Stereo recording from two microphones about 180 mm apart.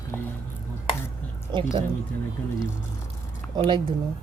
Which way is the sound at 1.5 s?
25° right (ahead or behind).